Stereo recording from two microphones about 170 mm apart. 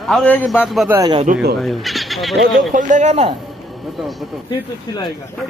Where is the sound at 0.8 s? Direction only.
15° right (ahead or behind).